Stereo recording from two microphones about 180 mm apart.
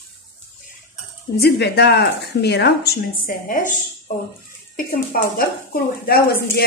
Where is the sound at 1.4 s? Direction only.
65° left (ahead or behind).